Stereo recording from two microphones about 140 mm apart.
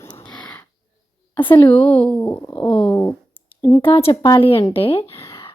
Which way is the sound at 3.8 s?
40° left (ahead or behind).